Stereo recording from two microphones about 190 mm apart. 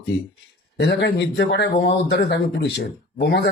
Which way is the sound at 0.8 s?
60° left (ahead or behind).